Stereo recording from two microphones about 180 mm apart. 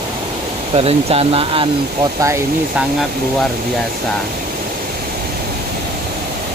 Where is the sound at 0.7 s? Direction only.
35° right (ahead or behind).